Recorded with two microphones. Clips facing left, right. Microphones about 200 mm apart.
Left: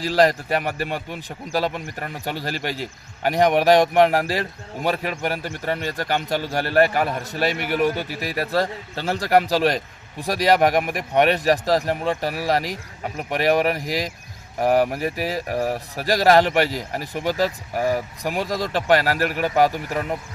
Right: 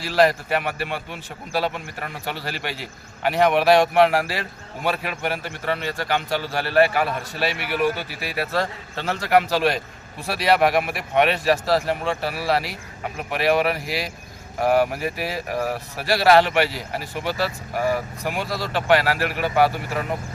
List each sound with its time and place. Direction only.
0.0 s a man's voice: 40° left (ahead or behind)
15.5 s speech: 15° left (ahead or behind)
16.0 s a man's voice: 40° left (ahead or behind)
17.7 s speech: 10° left (ahead or behind)
18.7 s a man's voice: 40° left (ahead or behind)